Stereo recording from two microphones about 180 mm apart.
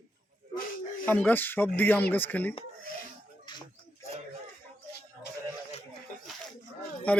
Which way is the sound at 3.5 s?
25° left (ahead or behind).